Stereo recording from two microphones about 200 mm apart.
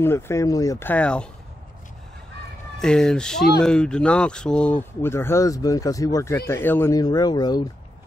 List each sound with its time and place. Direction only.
0.0 s speech: 15° left (ahead or behind)
2.8 s speech: 5° left (ahead or behind); by 7.6 s 20° left (ahead or behind)